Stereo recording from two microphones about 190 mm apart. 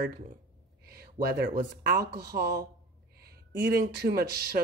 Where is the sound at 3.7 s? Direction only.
60° right (ahead or behind).